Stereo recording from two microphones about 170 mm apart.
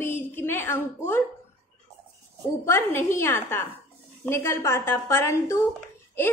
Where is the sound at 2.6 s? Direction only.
15° left (ahead or behind).